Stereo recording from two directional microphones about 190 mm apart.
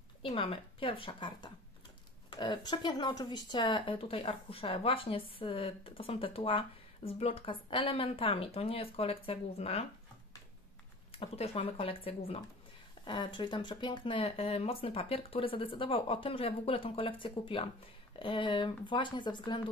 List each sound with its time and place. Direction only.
0.2 s speech: 30° left (ahead or behind)
11.1 s speech: 30° left (ahead or behind)